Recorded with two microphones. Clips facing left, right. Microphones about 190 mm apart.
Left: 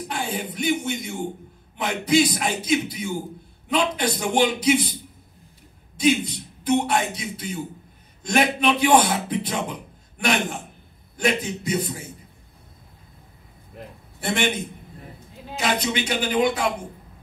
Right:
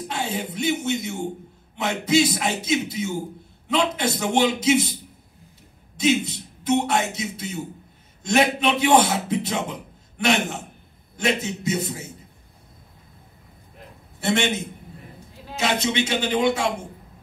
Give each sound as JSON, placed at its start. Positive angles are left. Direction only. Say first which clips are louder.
{"t": 0.1, "sound": "a man's voice", "louder": "right 1 dB", "side_deg": -25}
{"t": 5.9, "sound": "a man's voice", "louder": "left 1 dB", "side_deg": -25}
{"t": 14.2, "sound": "a man's voice", "louder": "right 2 dB", "side_deg": -25}